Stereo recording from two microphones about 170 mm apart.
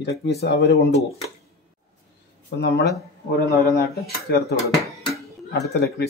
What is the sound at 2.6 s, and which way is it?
Speech, 80° left.